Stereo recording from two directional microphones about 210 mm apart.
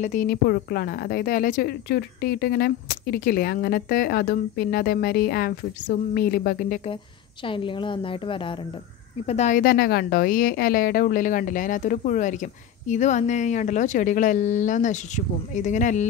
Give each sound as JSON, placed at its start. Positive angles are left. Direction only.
{"t": 0.0, "sound": "speech", "side_deg": 40}
{"t": 7.4, "sound": "a woman's voice", "side_deg": 25}